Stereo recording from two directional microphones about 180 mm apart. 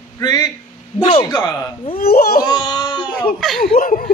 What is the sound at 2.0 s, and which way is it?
Speech, 60° left (ahead or behind).